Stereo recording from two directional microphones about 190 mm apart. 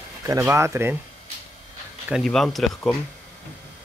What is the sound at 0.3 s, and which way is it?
Speech, 15° right (ahead or behind).